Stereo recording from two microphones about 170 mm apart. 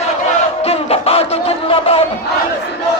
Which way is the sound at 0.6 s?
35° left (ahead or behind).